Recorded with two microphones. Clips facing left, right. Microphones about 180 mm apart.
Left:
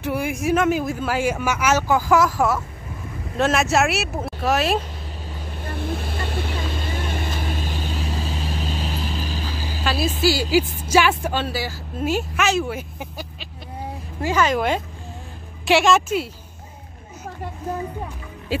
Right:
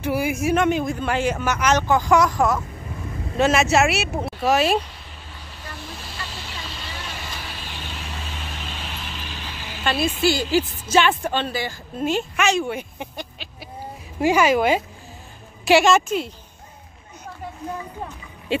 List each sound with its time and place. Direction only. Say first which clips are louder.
0.0 s a woman's voice: right 1 dB; centre (ahead or behind)
5.6 s vehicle: left 9 dB; 55° left (ahead or behind); by 9.8 s 35° left (ahead or behind)
9.8 s a woman's voice: even; 5° left (ahead or behind)
14.2 s a woman's voice: right 3 dB; 10° right (ahead or behind)
18.5 s music: right 2 dB; centre (ahead or behind)